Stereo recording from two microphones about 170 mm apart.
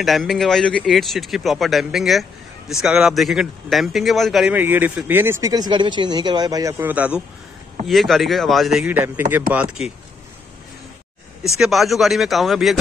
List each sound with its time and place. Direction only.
0.0 s speech: centre (ahead or behind)
7.8 s speech: centre (ahead or behind)
11.4 s speech: centre (ahead or behind)